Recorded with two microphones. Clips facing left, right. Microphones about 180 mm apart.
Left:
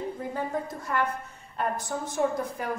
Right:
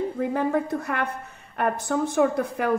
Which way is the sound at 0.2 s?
75° right (ahead or behind).